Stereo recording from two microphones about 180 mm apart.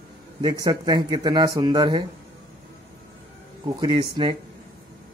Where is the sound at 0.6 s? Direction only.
20° right (ahead or behind).